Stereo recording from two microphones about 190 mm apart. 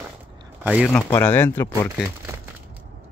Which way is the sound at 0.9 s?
10° left (ahead or behind).